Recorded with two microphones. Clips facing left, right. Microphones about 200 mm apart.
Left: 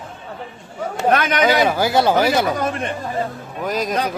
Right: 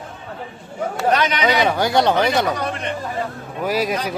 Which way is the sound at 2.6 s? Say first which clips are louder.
Left 3 dB; 45° left (ahead or behind).